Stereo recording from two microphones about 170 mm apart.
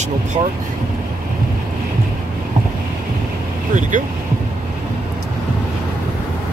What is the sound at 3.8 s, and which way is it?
Speech, 45° right (ahead or behind).